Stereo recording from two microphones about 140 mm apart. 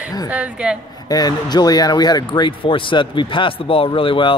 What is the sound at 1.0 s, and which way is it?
Speech, 30° left (ahead or behind).